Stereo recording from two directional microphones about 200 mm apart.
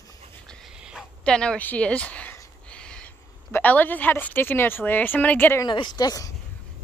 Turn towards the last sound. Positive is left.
turn(degrees=20)  # may be behind; listen again after turning